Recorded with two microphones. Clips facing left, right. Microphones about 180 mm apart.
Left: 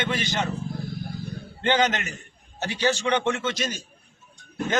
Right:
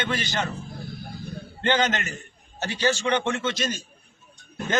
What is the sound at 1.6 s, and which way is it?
A man's voice, 15° left (ahead or behind).